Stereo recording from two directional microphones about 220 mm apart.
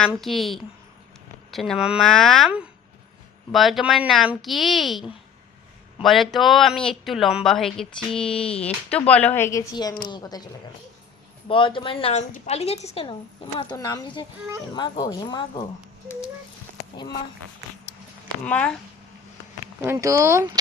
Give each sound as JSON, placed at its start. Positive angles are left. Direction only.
{"t": 0.0, "sound": "a woman's voice", "side_deg": 0}
{"t": 11.4, "sound": "a woman's voice", "side_deg": 20}
{"t": 18.4, "sound": "speech", "side_deg": 5}
{"t": 19.8, "sound": "speech", "side_deg": -10}